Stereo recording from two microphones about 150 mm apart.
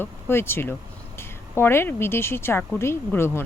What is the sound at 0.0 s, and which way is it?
Speech, 15° left (ahead or behind).